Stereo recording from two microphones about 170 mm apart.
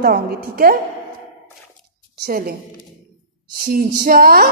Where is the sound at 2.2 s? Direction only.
60° right (ahead or behind).